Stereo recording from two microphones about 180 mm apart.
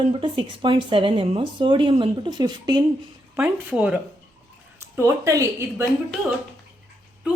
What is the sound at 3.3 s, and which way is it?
Speech, 5° right (ahead or behind).